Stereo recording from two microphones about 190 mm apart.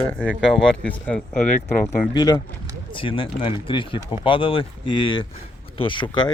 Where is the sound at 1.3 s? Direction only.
50° left (ahead or behind).